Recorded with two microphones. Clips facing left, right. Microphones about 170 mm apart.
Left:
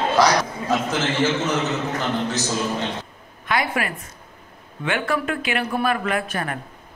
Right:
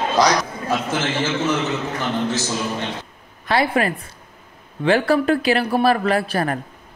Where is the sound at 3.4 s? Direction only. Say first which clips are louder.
Right 5 dB; 30° right (ahead or behind).